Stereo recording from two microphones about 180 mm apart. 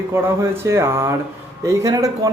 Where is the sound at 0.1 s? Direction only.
15° right (ahead or behind).